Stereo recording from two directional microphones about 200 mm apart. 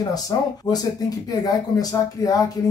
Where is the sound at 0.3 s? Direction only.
20° left (ahead or behind).